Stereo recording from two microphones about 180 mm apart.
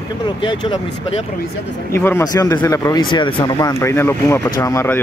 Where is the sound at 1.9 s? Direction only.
15° left (ahead or behind).